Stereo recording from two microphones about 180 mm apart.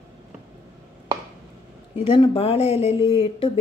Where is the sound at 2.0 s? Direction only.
25° left (ahead or behind).